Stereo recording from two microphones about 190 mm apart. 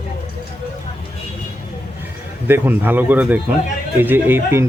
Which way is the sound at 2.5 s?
10° right (ahead or behind).